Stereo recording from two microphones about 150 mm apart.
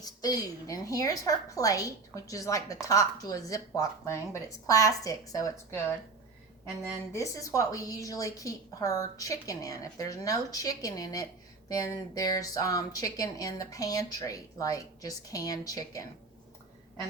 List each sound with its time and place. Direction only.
0.0 s speech: 25° left (ahead or behind)
7.1 s speech: 20° left (ahead or behind)